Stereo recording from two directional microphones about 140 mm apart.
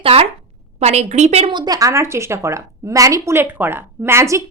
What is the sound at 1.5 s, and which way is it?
A woman's voice, 30° right (ahead or behind).